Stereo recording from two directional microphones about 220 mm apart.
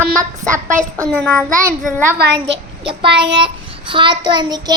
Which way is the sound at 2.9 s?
20° right (ahead or behind).